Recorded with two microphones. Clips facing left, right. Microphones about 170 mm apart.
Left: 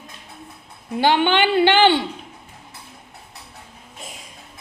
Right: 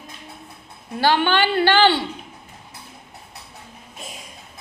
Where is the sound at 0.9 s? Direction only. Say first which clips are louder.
Left 1 dB; 20° left (ahead or behind).